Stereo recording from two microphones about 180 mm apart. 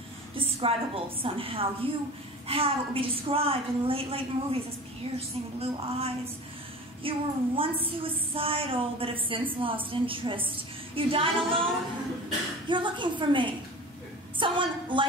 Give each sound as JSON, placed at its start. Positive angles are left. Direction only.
{"t": 0.4, "sound": "a woman's voice", "side_deg": -30}
{"t": 5.6, "sound": "a woman's voice", "side_deg": -35}